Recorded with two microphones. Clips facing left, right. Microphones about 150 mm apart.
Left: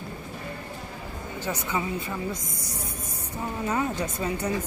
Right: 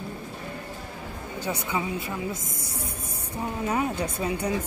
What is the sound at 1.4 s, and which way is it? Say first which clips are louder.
Speech: even; 10° right (ahead or behind).